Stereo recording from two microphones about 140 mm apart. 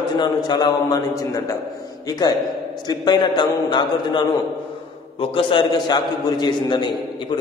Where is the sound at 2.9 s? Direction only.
30° left (ahead or behind).